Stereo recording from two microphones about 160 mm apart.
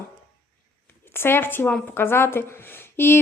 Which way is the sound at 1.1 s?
15° left (ahead or behind).